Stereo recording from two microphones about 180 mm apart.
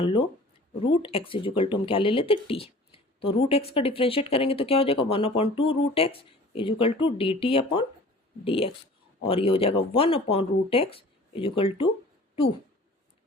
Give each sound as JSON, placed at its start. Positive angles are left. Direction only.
{"t": 0.0, "sound": "speech", "side_deg": 30}